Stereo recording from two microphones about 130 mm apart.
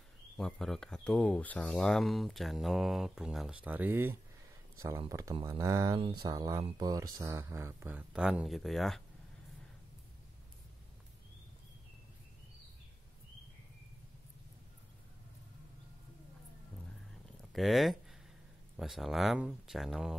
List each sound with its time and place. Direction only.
0.4 s speech: 5° left (ahead or behind); by 5.3 s 25° right (ahead or behind)
5.3 s speech: 45° right (ahead or behind)
5.6 s speech: 25° right (ahead or behind)
5.9 s speech: 45° right (ahead or behind)
6.2 s speech: 30° right (ahead or behind)
8.1 s speech: 5° right (ahead or behind)
17.5 s speech: centre (ahead or behind)